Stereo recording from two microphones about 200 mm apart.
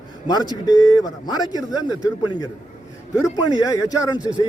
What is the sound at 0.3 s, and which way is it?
A man's voice, 20° left (ahead or behind).